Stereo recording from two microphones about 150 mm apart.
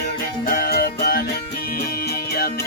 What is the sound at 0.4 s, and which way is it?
Music, 75° left (ahead or behind).